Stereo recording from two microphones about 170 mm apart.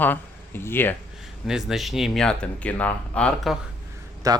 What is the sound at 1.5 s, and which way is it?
Speech, centre (ahead or behind).